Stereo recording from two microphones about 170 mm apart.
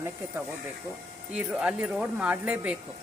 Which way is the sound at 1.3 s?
5° right (ahead or behind).